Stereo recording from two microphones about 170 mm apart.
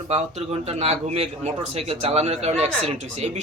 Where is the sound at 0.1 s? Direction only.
40° right (ahead or behind).